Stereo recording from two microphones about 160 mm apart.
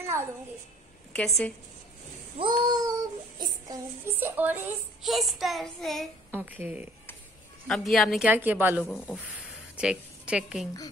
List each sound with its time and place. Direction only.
0.0 s a sound: 15° right (ahead or behind)
1.1 s a woman's voice: 5° left (ahead or behind)
2.3 s babbling: 25° right (ahead or behind)
3.3 s a woman's voice: 25° right (ahead or behind)
5.0 s child singing: centre (ahead or behind)
6.3 s a woman's voice: 10° right (ahead or behind)
7.6 s child singing: centre (ahead or behind)
8.3 s a woman's voice: 10° right (ahead or behind)